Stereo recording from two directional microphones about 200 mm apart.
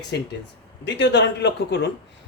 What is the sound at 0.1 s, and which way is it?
Speech, 60° left (ahead or behind).